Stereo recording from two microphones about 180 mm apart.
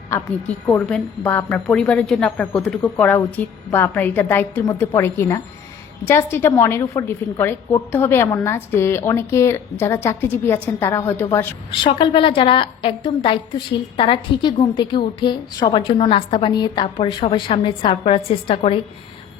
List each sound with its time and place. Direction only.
0.1 s a woman's voice: 10° left (ahead or behind)
11.8 s a woman's voice: 30° left (ahead or behind)